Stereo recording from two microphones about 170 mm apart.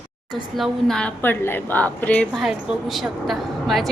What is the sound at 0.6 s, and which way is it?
A woman's voice, 5° left (ahead or behind).